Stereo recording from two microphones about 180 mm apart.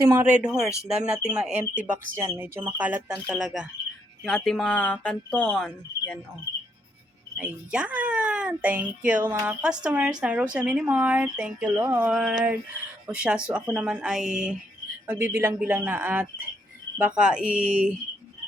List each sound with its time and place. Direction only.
0.0 s speech: 15° right (ahead or behind)
0.3 s speech: 5° right (ahead or behind)
7.3 s speech: 5° right (ahead or behind)